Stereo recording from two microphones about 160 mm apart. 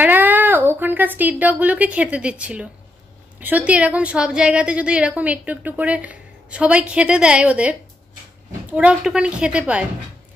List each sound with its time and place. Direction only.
0.0 s a woman's voice: 10° right (ahead or behind)